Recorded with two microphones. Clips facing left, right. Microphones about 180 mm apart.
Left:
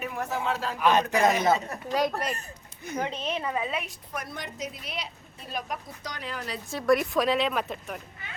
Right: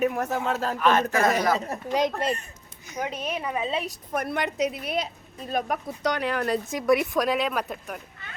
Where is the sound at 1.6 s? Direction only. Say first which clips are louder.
Right 2 dB; 20° right (ahead or behind).